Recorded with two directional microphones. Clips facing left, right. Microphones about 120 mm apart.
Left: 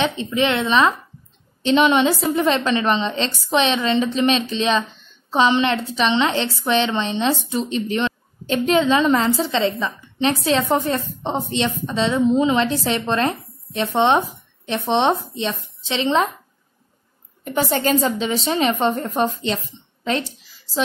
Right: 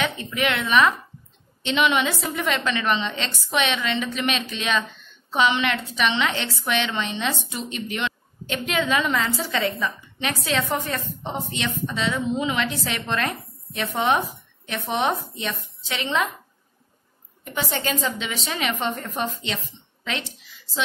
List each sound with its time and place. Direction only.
0.0 s a woman's voice: 25° left (ahead or behind)
17.5 s speech: 40° left (ahead or behind)
19.4 s a sound: 35° left (ahead or behind)